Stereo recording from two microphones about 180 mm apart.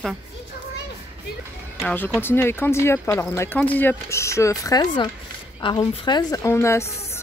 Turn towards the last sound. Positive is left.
turn(degrees=15)  # may be behind; listen again after turning